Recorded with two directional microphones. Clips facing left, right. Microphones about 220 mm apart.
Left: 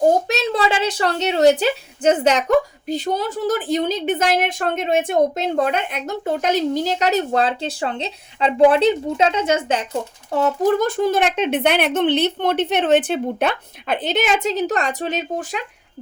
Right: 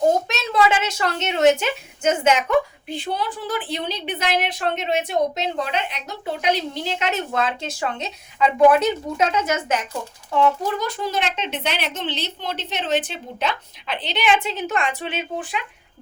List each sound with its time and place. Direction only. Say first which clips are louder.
0.3 s a woman's voice: left 1 dB; 30° left (ahead or behind)
10.3 s speech: left 3 dB; 45° left (ahead or behind)